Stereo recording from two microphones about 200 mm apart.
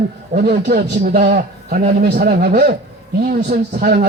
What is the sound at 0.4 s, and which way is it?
A man's voice, 55° right (ahead or behind).